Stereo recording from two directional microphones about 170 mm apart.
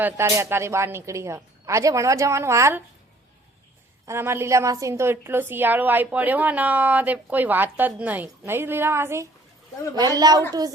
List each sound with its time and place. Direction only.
0.0 s a woman's voice: 15° right (ahead or behind)
4.0 s a woman's voice: 15° right (ahead or behind)